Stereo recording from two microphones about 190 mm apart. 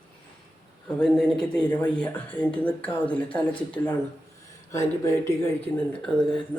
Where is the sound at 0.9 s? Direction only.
5° left (ahead or behind).